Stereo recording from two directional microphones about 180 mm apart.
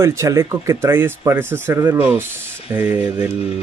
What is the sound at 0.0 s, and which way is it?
Speech, 15° right (ahead or behind).